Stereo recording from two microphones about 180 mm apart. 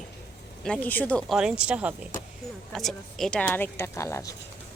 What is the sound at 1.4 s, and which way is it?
A woman's voice, 5° right (ahead or behind).